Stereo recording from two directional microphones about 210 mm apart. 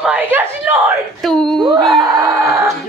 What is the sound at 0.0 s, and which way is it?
Speech, 5° right (ahead or behind).